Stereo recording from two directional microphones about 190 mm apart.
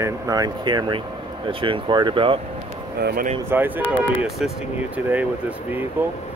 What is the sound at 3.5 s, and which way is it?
Speech, 10° right (ahead or behind).